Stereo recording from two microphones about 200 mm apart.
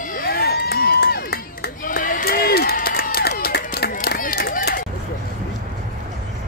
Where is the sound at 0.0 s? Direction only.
45° left (ahead or behind).